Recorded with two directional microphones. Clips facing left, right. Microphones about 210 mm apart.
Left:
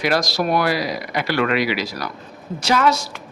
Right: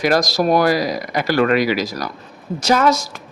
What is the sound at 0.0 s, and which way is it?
A woman's voice, 45° right (ahead or behind).